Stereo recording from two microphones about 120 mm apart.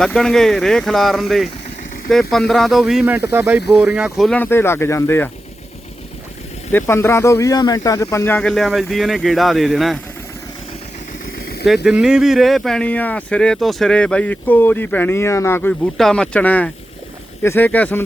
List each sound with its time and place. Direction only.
0.0 s speech: 5° left (ahead or behind)
3.2 s speech: 20° right (ahead or behind)
3.9 s speech: 10° right (ahead or behind)
4.3 s speech: 15° left (ahead or behind)
6.7 s speech: 20° left (ahead or behind)
8.4 s speech: 5° left (ahead or behind)
11.6 s speech: centre (ahead or behind); by 15.9 s 20° left (ahead or behind)
16.0 s speech: 5° left (ahead or behind)